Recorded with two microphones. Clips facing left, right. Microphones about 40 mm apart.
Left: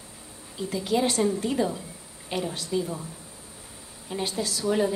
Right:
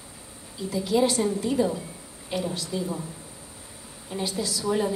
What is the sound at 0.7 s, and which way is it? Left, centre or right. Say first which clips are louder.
A woman's voice: right 2 dB; left.